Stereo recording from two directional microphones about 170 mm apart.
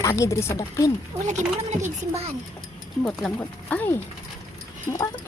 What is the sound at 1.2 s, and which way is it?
Speech, 45° right (ahead or behind).